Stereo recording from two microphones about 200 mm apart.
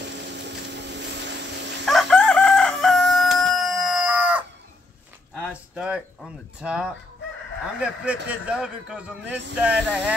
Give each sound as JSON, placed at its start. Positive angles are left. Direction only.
{"t": 0.1, "sound": "fowl", "side_deg": -60}
{"t": 1.9, "sound": "chicken", "side_deg": 0}
{"t": 5.5, "sound": "a sound", "side_deg": -5}
{"t": 6.6, "sound": "a man's voice", "side_deg": -5}